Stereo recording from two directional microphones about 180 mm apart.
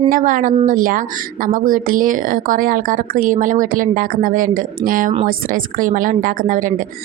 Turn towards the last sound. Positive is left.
turn(degrees=-50)  # may be behind; listen again after turning